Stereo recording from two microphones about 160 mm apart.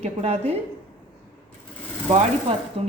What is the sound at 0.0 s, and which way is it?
Speech, 40° right (ahead or behind).